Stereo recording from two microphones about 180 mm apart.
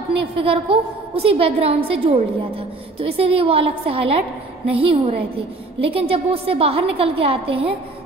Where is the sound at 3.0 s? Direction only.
30° right (ahead or behind).